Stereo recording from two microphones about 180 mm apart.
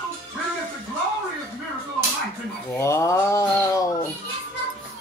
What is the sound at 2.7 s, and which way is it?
Speech, 15° left (ahead or behind).